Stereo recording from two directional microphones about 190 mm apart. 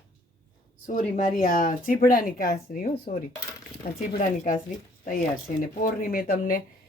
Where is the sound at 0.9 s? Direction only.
45° left (ahead or behind).